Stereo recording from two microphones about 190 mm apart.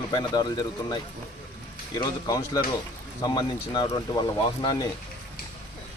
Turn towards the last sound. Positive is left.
turn(degrees=20)  # may be behind; listen again after turning